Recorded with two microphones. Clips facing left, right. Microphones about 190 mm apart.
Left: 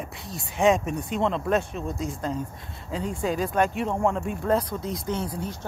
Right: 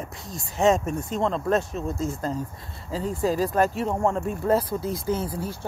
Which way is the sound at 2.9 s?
Centre (ahead or behind).